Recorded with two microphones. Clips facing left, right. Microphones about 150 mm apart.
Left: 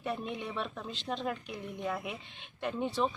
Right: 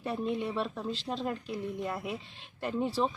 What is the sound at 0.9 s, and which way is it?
Speech, centre (ahead or behind).